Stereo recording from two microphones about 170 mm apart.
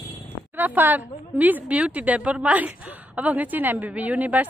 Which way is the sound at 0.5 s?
10° right (ahead or behind).